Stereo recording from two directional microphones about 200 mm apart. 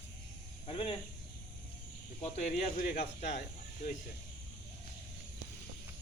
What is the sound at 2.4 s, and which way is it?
Speech, 40° left (ahead or behind).